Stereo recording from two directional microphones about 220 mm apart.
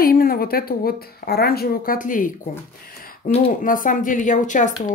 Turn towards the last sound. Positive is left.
turn(degrees=35)  # may be behind; listen again after turning